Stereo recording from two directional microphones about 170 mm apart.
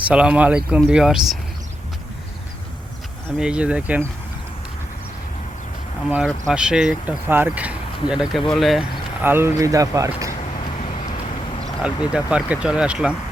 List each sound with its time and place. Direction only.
0.1 s speech: 5° right (ahead or behind)
3.2 s speech: 5° right (ahead or behind)
6.1 s speech: 5° right (ahead or behind)
9.2 s speech: 15° right (ahead or behind)
12.1 s speech: 5° right (ahead or behind)